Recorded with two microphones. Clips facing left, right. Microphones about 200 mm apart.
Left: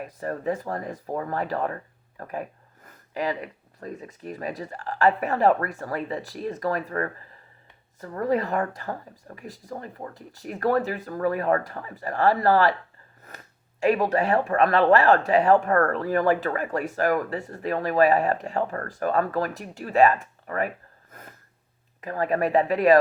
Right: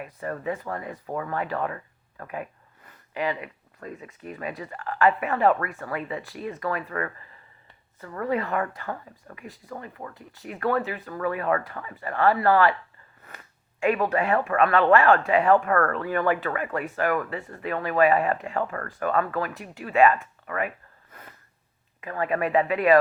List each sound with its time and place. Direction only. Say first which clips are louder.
0.0 s speech: left 2 dB; 40° left (ahead or behind)